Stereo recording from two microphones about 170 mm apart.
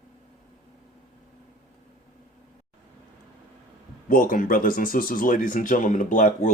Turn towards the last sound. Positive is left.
turn(degrees=50)  # may be behind; listen again after turning